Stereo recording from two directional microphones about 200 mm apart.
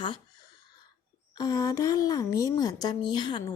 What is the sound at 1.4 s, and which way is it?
A woman's voice, 20° left (ahead or behind).